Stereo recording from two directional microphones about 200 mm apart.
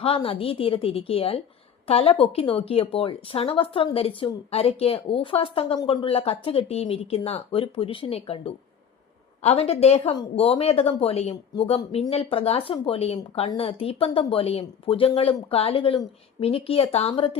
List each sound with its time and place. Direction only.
0.0 s speech: 25° left (ahead or behind)